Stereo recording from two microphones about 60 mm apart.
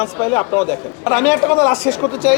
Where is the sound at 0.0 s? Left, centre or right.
Left.